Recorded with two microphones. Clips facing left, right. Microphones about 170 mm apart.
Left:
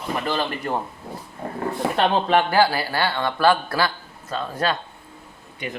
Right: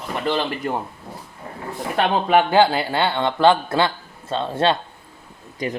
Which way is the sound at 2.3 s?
20° right (ahead or behind).